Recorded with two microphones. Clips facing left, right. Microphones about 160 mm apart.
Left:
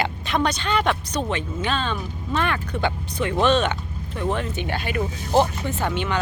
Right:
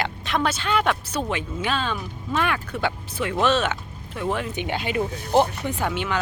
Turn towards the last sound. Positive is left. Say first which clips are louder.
# left 1 dB
turn(degrees=-5)  # may be behind; listen again after turning